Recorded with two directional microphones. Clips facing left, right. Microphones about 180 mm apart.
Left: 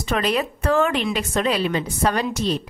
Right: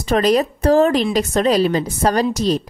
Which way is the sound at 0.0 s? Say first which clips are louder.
Right 6 dB; 40° right (ahead or behind).